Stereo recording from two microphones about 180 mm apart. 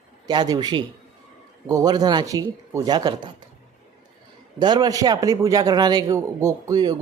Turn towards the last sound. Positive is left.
turn(degrees=-20)  # may be behind; listen again after turning